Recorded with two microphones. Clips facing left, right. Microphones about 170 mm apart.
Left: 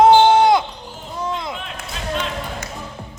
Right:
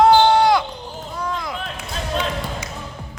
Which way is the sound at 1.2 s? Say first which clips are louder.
Left 2 dB; 25° left (ahead or behind).